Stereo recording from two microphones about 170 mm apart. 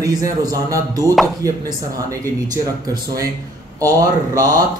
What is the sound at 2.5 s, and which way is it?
Speech, 20° right (ahead or behind).